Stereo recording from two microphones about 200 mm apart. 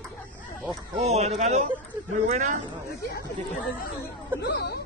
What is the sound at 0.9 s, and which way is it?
A man's voice, 30° right (ahead or behind).